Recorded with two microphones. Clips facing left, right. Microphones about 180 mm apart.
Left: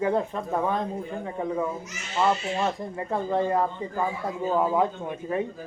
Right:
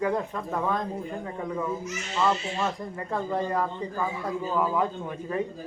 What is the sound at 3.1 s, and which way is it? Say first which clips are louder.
Speech: left 3 dB; 20° left (ahead or behind).